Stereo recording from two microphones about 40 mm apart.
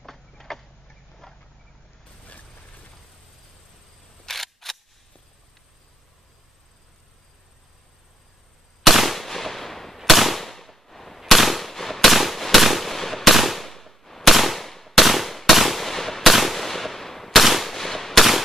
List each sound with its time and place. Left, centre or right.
0.0 s a sound: centre
1.2 s vehicle: centre
2.2 s vehicle: left
4.3 s camera: centre
8.8 s machine gun: centre
9.9 s firecracker: centre